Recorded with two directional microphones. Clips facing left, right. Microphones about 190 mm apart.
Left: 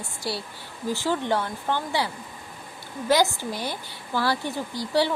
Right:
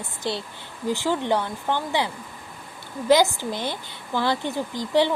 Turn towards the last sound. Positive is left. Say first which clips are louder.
# right 3 dB
turn(degrees=-20)  # may be behind; listen again after turning